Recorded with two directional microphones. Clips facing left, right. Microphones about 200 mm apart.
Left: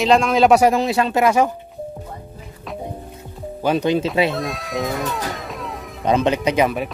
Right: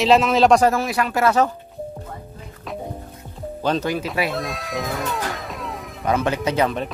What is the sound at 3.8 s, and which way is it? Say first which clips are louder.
Speech: left 5 dB; 25° left (ahead or behind).